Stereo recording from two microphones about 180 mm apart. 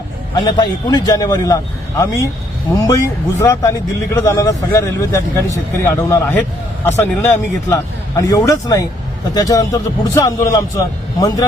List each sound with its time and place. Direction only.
0.3 s a man's voice: 25° left (ahead or behind)